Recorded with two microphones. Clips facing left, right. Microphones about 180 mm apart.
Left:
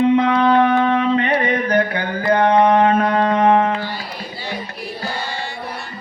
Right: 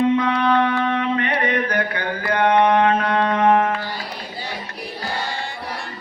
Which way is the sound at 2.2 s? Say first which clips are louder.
Left 3 dB; 30° left (ahead or behind).